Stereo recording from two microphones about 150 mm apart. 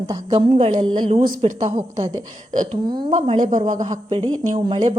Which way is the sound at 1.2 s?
65° right (ahead or behind).